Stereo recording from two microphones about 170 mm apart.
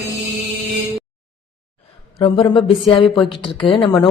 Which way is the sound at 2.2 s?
35° left (ahead or behind).